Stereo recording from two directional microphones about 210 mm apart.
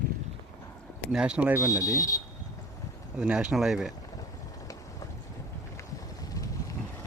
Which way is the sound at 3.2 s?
5° right (ahead or behind).